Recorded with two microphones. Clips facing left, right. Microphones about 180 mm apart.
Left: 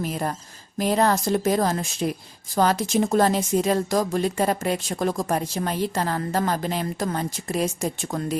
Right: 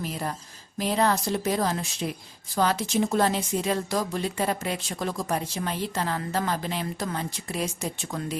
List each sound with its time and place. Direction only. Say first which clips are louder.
0.0 s speech: left 4 dB; 50° left (ahead or behind)